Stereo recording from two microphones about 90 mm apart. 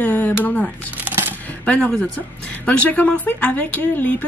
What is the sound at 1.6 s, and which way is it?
A woman's voice, 10° left (ahead or behind).